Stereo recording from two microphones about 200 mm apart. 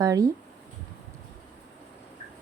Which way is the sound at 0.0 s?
20° right (ahead or behind).